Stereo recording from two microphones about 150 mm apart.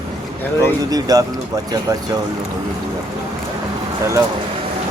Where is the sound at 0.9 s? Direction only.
25° right (ahead or behind).